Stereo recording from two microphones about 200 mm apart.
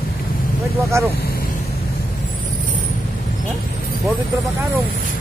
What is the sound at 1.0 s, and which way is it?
Speech, 15° right (ahead or behind).